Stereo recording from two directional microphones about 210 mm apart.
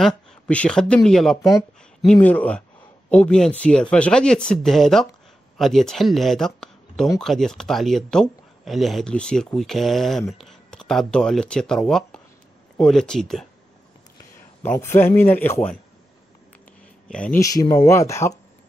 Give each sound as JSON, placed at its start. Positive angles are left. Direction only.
{"t": 0.0, "sound": "a man's voice", "side_deg": 5}
{"t": 14.6, "sound": "a man's voice", "side_deg": 10}
{"t": 17.1, "sound": "a man's voice", "side_deg": 10}